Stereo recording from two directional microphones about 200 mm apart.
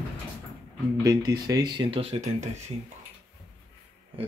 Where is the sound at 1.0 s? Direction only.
20° right (ahead or behind).